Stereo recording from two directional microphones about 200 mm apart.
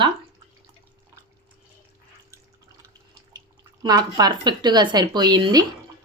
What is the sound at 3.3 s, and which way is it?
Speech, 20° right (ahead or behind).